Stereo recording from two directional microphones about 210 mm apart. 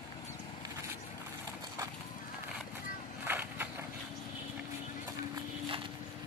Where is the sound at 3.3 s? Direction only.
10° right (ahead or behind).